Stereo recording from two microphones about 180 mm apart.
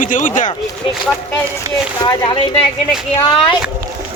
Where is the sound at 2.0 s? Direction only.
25° left (ahead or behind).